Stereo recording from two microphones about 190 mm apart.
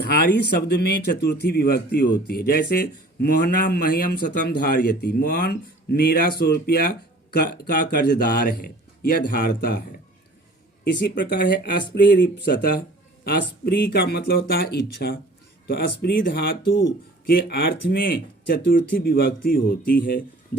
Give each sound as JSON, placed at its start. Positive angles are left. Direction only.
{"t": 0.1, "sound": "a man's voice", "side_deg": 60}
{"t": 11.3, "sound": "a man's voice", "side_deg": 50}